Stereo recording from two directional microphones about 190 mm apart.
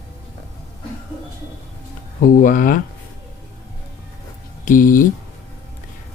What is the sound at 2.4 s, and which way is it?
Speech, 45° left (ahead or behind).